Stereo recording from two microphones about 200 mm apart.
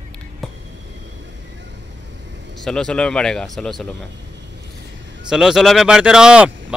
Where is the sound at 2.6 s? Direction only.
5° left (ahead or behind).